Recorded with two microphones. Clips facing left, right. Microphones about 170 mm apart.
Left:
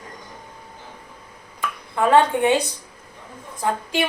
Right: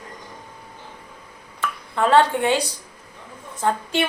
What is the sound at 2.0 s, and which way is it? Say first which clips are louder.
A woman's voice: left 1 dB; 15° left (ahead or behind).